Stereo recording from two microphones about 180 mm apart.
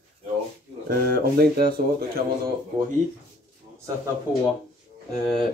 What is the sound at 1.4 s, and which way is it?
Speech, 55° right (ahead or behind).